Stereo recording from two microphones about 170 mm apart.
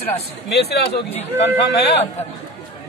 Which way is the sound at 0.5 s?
75° left (ahead or behind).